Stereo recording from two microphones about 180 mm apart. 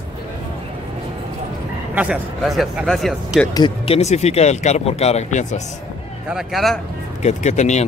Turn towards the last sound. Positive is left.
turn(degrees=40)  # may be behind; listen again after turning